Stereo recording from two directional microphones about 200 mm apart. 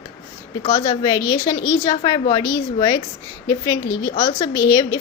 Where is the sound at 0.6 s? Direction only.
25° left (ahead or behind).